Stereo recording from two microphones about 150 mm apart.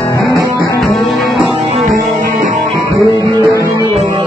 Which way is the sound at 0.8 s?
Centre (ahead or behind).